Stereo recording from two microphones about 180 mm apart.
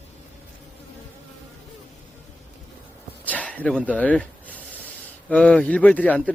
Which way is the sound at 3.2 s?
10° left (ahead or behind).